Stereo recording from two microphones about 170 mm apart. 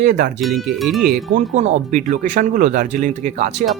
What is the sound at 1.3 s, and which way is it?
Speech, 45° right (ahead or behind).